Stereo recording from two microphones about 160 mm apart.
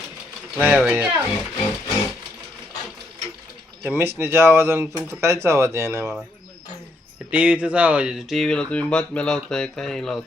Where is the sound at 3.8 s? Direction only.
15° right (ahead or behind).